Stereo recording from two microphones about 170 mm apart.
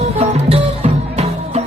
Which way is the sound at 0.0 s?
35° right (ahead or behind).